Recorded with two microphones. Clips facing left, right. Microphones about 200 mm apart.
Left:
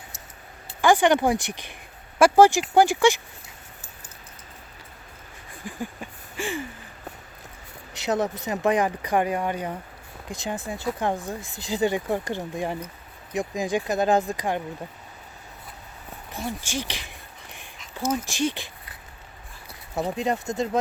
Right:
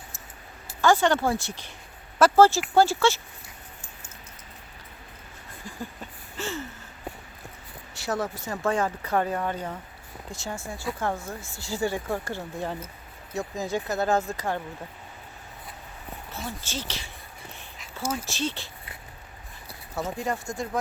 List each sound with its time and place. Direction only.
0.8 s speech: 15° left (ahead or behind)
5.6 s a sound: 15° left (ahead or behind)
7.9 s speech: 20° left (ahead or behind)
16.3 s speech: 15° left (ahead or behind)
18.3 s speech: 15° left (ahead or behind)
20.1 s speech: 20° left (ahead or behind)